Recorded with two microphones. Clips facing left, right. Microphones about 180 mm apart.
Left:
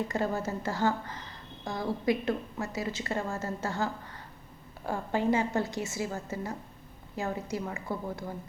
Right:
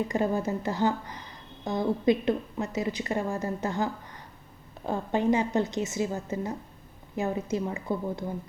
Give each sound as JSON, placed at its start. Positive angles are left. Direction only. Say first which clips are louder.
{"t": 0.1, "sound": "a woman's voice", "louder": "right 4 dB", "side_deg": -15}
{"t": 4.9, "sound": "a woman's voice", "louder": "right 3 dB", "side_deg": -20}